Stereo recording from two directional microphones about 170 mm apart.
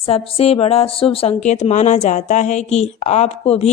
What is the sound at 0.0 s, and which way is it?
A woman's voice, 35° left (ahead or behind).